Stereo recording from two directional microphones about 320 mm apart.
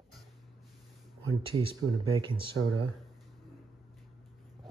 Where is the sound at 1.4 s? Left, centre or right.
Centre.